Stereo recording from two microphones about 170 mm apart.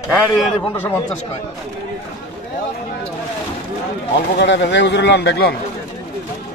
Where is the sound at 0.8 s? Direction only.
10° left (ahead or behind).